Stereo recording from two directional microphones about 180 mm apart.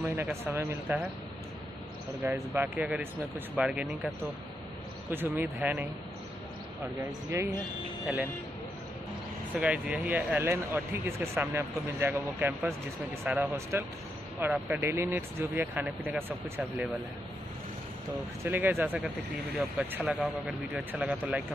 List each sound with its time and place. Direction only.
0.0 s speech: 10° right (ahead or behind)
2.2 s speech: 10° right (ahead or behind)
5.1 s speech: 10° right (ahead or behind)
7.1 s speech: 15° right (ahead or behind)
9.5 s speech: 5° right (ahead or behind)
18.4 s speech: 10° right (ahead or behind)